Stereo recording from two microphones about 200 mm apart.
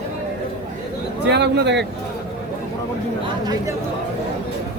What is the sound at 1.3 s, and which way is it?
Speech, 60° right (ahead or behind).